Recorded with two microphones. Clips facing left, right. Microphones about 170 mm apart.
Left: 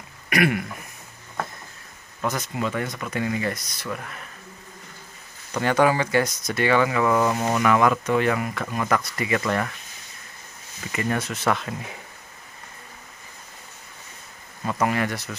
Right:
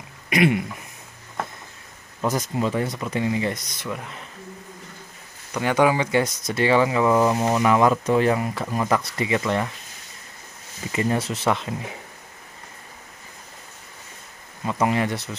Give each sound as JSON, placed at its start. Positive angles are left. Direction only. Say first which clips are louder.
{"t": 0.3, "sound": "throat clearing", "louder": "right 2 dB", "side_deg": -20}
{"t": 2.3, "sound": "speech", "louder": "right 5 dB", "side_deg": -35}
{"t": 5.6, "sound": "speech", "louder": "even", "side_deg": -15}
{"t": 10.9, "sound": "speech", "louder": "right 3 dB", "side_deg": -25}
{"t": 14.6, "sound": "speech", "louder": "right 1 dB", "side_deg": -15}
{"t": 15.0, "sound": "speech", "louder": "right 2 dB", "side_deg": -25}